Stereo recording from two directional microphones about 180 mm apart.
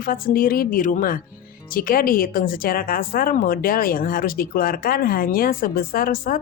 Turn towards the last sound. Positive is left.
turn(degrees=55)  # may be behind; listen again after turning